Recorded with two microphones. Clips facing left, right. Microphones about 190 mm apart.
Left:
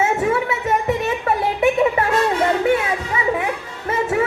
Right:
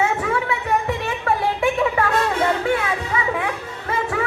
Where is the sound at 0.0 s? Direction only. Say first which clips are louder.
Left 3 dB; 25° left (ahead or behind).